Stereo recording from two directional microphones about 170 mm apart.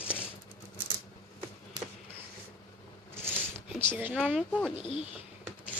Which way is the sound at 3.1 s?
15° right (ahead or behind).